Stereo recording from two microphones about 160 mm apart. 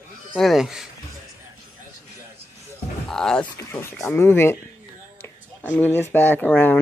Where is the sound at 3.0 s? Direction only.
5° left (ahead or behind).